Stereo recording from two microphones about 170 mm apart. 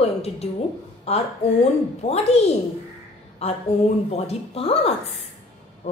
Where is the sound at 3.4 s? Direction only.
40° left (ahead or behind).